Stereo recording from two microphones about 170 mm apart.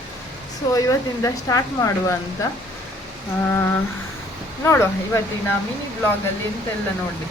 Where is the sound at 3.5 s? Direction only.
15° left (ahead or behind).